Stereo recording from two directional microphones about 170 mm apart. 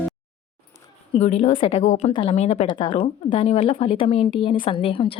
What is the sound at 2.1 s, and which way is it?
A woman's voice, 35° left (ahead or behind).